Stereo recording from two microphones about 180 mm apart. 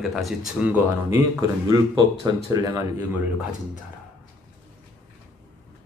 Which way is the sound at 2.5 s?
20° right (ahead or behind).